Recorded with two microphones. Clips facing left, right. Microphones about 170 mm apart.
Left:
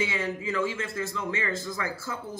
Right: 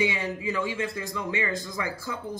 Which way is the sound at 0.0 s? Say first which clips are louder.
Right 2 dB; 15° right (ahead or behind).